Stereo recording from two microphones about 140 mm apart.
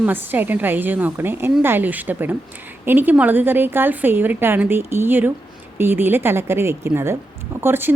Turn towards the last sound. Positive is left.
turn(degrees=-15)  # may be behind; listen again after turning